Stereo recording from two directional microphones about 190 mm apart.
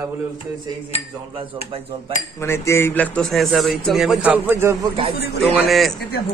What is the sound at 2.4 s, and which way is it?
A man's voice, 15° left (ahead or behind).